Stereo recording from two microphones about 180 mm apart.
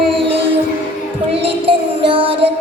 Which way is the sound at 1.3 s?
30° right (ahead or behind).